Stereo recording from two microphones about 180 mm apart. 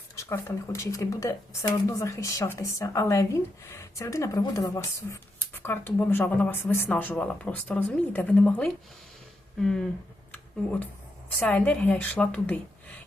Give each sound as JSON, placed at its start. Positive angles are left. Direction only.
{"t": 0.2, "sound": "speech", "side_deg": 15}
{"t": 11.3, "sound": "speech", "side_deg": 10}